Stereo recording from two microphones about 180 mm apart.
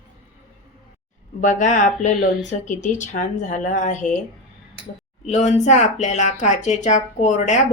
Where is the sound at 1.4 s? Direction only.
45° left (ahead or behind).